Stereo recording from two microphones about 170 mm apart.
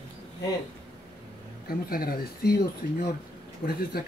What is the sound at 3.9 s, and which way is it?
Speech, 65° left (ahead or behind).